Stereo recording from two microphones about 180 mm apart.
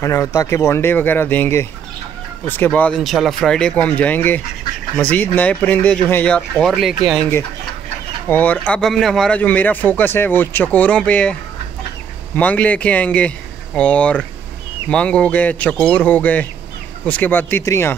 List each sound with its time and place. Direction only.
0.0 s a man's voice: 15° left (ahead or behind); by 7.0 s centre (ahead or behind)
8.3 s a man's voice: 10° left (ahead or behind)
12.4 s a man's voice: 10° left (ahead or behind)